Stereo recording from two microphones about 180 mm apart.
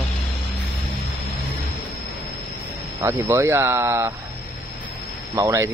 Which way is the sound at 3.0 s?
20° right (ahead or behind).